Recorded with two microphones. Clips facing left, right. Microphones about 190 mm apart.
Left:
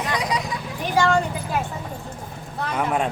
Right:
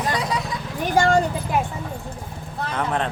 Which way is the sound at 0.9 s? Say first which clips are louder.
Right 2 dB; 45° right (ahead or behind).